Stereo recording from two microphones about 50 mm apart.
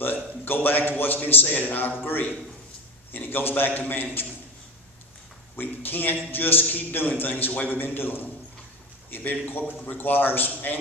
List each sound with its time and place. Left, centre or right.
0.0 s a man's voice: left
5.6 s a man's voice: left